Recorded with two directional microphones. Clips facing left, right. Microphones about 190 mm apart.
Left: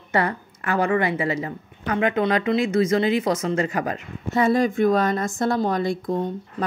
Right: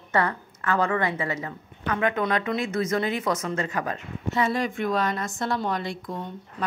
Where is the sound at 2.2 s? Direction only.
35° left (ahead or behind).